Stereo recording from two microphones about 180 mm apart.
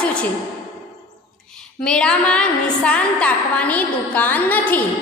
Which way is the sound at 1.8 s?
5° left (ahead or behind).